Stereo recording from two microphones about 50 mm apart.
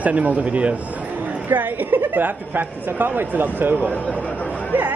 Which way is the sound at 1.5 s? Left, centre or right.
Right.